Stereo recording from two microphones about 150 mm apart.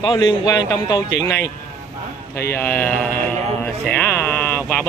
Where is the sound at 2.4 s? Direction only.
15° left (ahead or behind).